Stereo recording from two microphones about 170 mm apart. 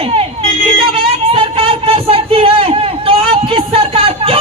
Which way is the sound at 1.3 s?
35° right (ahead or behind).